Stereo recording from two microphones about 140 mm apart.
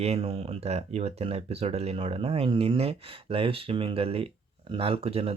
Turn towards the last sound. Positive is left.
turn(degrees=-45)  # may be behind; listen again after turning